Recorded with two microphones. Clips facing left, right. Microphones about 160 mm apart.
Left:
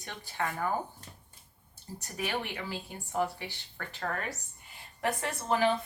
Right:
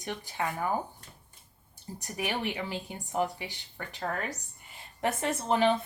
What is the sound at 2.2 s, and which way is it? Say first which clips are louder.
A woman's voice: right 2 dB; 15° right (ahead or behind).